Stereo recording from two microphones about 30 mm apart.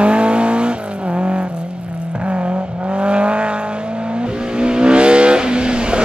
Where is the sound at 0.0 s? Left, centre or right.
Right.